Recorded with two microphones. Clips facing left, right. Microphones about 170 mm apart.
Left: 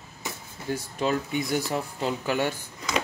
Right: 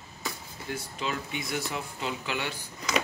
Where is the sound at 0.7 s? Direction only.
35° left (ahead or behind).